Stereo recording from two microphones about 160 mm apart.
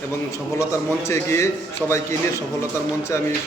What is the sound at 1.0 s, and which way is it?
Speech, 15° left (ahead or behind).